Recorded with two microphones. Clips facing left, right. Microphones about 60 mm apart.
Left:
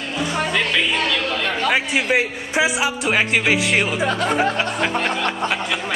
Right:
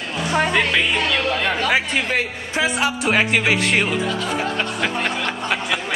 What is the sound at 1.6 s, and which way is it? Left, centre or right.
A man's voice, centre.